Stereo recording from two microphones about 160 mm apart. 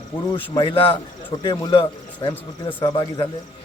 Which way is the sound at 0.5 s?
30° left (ahead or behind).